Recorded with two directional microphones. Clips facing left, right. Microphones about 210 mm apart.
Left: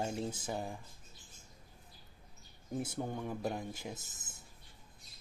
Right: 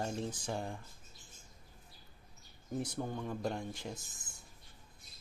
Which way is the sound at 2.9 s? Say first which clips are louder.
Even; 15° left (ahead or behind).